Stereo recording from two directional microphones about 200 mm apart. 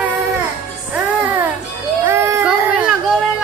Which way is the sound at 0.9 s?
10° right (ahead or behind).